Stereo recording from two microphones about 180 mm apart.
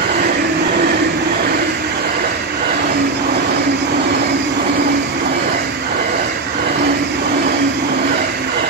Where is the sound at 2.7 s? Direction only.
60° right (ahead or behind).